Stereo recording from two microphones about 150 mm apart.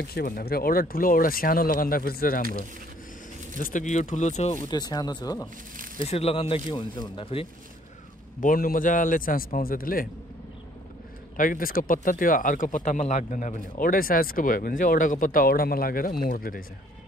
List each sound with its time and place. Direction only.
0.0 s speech: 90° left
3.5 s speech: 60° left (ahead or behind)
4.6 s speech: 25° left (ahead or behind)
6.0 s speech: 40° left (ahead or behind)
8.4 s speech: 65° left (ahead or behind)
11.3 s speech: 65° left (ahead or behind)